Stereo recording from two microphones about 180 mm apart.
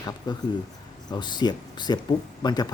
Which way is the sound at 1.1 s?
25° left (ahead or behind).